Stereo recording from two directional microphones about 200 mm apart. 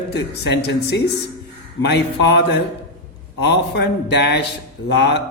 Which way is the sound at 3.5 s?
60° left (ahead or behind).